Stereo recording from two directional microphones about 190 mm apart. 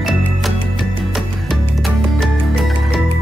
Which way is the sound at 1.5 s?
Centre (ahead or behind).